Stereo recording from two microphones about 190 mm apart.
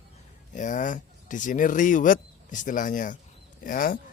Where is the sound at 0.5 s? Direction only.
40° left (ahead or behind).